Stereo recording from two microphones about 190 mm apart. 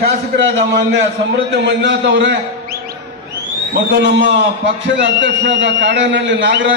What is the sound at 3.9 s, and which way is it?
Bird, 65° right (ahead or behind).